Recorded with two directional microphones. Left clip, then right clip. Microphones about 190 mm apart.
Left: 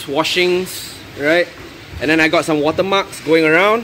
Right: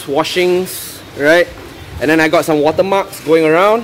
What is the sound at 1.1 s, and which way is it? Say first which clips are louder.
A man's voice: right 5 dB; 15° right (ahead or behind).